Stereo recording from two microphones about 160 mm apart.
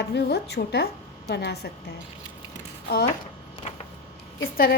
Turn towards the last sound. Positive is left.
turn(degrees=65)  # may be behind; listen again after turning